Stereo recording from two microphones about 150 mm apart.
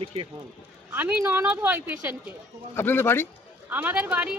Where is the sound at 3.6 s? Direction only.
10° right (ahead or behind).